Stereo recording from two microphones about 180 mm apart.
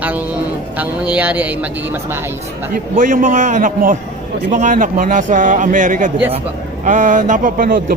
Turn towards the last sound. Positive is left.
turn(degrees=-55)  # may be behind; listen again after turning